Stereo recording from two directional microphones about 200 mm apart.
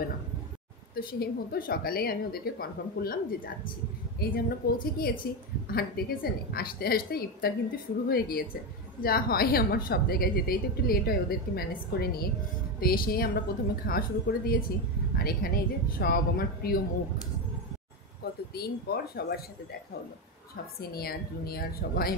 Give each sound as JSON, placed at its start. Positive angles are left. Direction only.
{"t": 0.9, "sound": "a woman's voice", "side_deg": 50}
{"t": 18.2, "sound": "speech", "side_deg": 50}
{"t": 20.9, "sound": "a woman's voice", "side_deg": 50}